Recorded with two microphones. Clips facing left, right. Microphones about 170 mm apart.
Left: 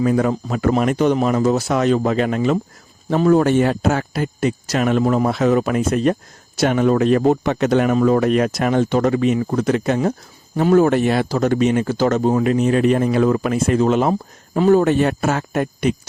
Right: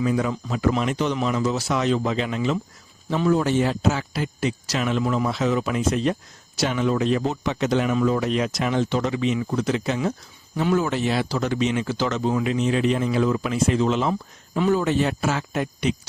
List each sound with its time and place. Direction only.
0.0 s a man's voice: 50° left (ahead or behind)